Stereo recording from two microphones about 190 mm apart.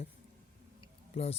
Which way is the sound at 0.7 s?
35° left (ahead or behind).